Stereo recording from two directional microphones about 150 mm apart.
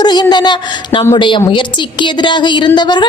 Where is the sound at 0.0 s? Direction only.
30° left (ahead or behind).